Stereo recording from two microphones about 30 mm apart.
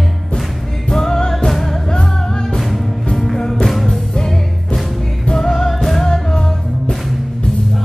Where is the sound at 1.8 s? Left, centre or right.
Left; by 4.0 s centre.